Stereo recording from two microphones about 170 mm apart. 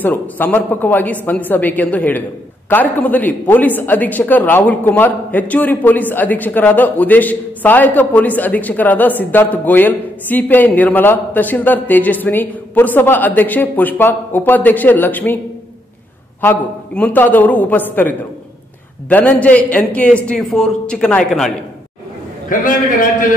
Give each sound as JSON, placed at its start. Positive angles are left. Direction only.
{"t": 0.0, "sound": "a man's voice", "side_deg": 10}
{"t": 16.3, "sound": "a man's voice", "side_deg": 10}
{"t": 22.5, "sound": "a man's voice", "side_deg": 50}